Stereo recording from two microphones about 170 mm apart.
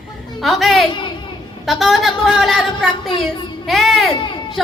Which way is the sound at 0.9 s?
30° left (ahead or behind).